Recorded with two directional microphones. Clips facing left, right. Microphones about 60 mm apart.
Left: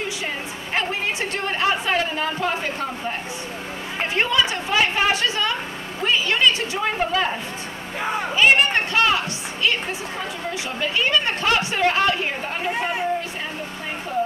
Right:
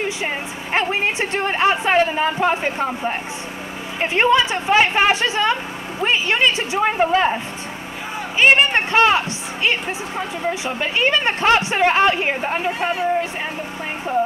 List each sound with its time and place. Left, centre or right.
0.7 s speech: right
8.4 s speech: right